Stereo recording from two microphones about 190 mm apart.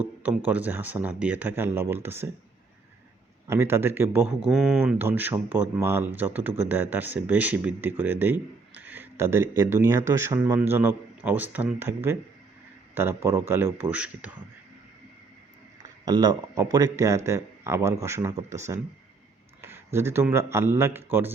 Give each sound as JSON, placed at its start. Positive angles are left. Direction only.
{"t": 0.0, "sound": "speech", "side_deg": -10}
{"t": 3.4, "sound": "speech", "side_deg": -15}
{"t": 4.4, "sound": "speech", "side_deg": 0}
{"t": 4.8, "sound": "a man's voice", "side_deg": -10}
{"t": 16.0, "sound": "speech", "side_deg": -20}
{"t": 19.6, "sound": "speech", "side_deg": -15}